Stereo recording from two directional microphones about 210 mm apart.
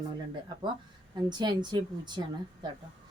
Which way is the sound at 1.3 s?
20° right (ahead or behind).